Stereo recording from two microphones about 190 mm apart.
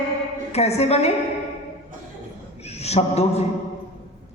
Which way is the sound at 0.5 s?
35° left (ahead or behind).